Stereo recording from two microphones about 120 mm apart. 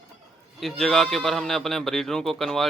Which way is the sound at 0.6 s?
Centre (ahead or behind).